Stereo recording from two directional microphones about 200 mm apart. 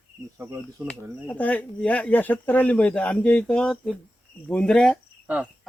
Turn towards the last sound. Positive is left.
turn(degrees=-5)  # may be behind; listen again after turning